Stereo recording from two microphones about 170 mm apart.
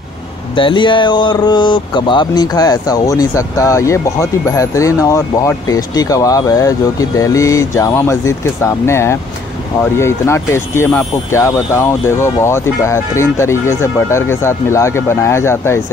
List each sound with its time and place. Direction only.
0.6 s speech: 30° left (ahead or behind)